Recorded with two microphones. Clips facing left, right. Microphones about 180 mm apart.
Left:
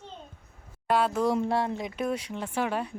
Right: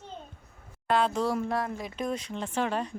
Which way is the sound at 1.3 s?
25° left (ahead or behind).